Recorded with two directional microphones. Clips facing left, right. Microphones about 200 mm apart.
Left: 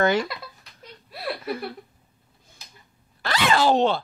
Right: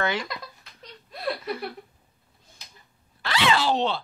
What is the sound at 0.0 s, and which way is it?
Speech, 45° left (ahead or behind).